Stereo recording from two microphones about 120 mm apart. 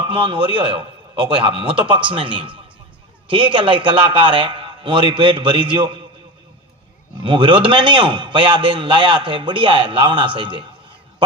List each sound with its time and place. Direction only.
0.1 s a man's voice: 45° right (ahead or behind)
7.2 s a man's voice: 45° right (ahead or behind)